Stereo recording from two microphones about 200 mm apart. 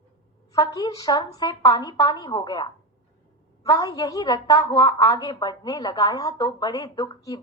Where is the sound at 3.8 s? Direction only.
20° left (ahead or behind).